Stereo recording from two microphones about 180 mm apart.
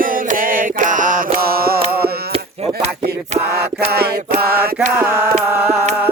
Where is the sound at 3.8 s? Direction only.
60° right (ahead or behind).